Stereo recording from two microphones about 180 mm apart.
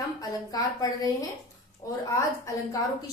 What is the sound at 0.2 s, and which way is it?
A woman's voice, 20° left (ahead or behind).